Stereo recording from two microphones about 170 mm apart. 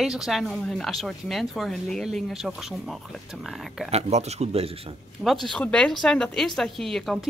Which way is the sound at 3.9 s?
40° right (ahead or behind).